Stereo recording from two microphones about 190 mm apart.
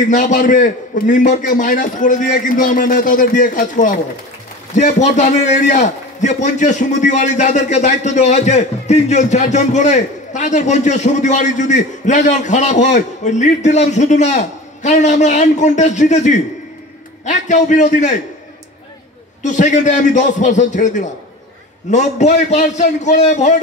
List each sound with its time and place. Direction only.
0.1 s a man's voice: 40° left (ahead or behind)
19.4 s a man's voice: 40° left (ahead or behind)